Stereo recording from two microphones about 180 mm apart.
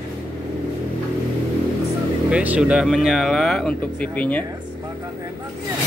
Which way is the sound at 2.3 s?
5° right (ahead or behind).